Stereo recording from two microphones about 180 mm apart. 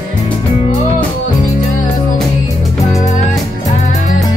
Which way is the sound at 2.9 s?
40° left (ahead or behind).